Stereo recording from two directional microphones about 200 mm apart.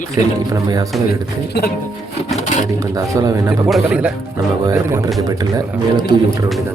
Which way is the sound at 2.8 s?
15° right (ahead or behind).